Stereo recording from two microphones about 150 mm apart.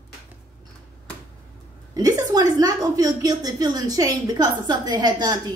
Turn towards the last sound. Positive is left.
turn(degrees=-30)  # may be behind; listen again after turning